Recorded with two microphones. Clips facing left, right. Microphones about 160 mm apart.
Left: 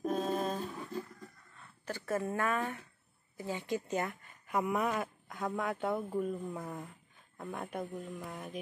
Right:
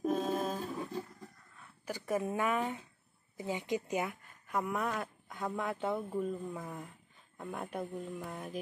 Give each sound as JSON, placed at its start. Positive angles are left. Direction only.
{"t": 0.0, "sound": "humming", "side_deg": 0}
{"t": 1.6, "sound": "speech", "side_deg": -15}
{"t": 4.5, "sound": "speech", "side_deg": 5}